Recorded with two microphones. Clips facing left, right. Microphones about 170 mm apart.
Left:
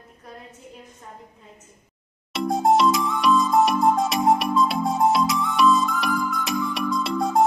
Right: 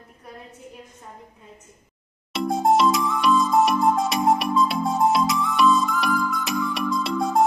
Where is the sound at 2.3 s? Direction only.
Centre (ahead or behind).